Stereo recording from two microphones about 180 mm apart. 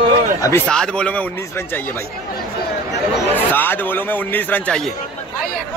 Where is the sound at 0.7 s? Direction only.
5° left (ahead or behind).